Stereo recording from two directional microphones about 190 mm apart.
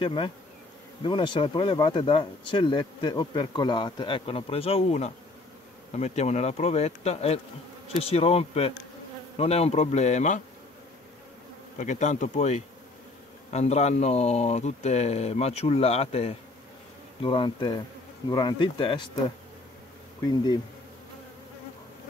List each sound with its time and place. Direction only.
0.0 s speech: 25° left (ahead or behind)
11.8 s speech: 40° left (ahead or behind)